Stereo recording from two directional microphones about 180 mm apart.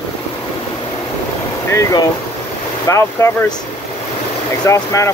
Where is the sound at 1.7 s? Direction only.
20° left (ahead or behind).